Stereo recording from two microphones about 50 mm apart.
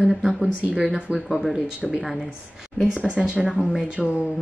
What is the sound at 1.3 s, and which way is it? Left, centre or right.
Speech, centre.